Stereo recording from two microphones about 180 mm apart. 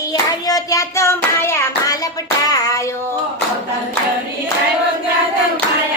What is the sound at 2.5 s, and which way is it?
Child singing, 20° left (ahead or behind).